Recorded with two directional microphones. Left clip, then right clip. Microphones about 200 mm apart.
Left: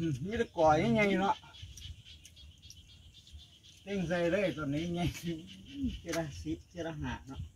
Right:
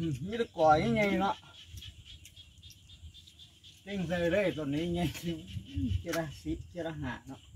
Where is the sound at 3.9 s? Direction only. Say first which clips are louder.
Even; 10° left (ahead or behind).